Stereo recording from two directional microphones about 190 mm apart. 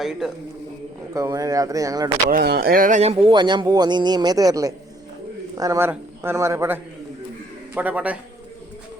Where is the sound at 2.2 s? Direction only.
55° right (ahead or behind); by 8.1 s 10° right (ahead or behind).